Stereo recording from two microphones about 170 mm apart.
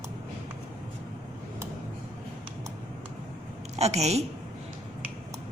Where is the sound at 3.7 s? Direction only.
40° right (ahead or behind).